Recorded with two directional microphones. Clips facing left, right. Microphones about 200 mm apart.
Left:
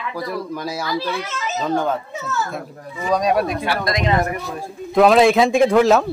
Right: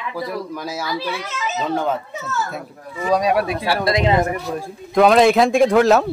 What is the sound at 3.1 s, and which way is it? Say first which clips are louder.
Speech: even; 5° right (ahead or behind).